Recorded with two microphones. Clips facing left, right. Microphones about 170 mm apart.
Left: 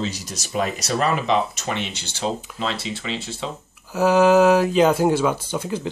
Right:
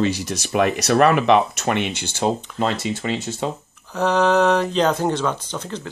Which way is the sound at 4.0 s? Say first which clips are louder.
Left 3 dB; 5° left (ahead or behind).